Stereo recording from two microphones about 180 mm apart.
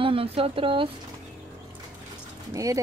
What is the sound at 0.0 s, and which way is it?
Speech, 30° right (ahead or behind).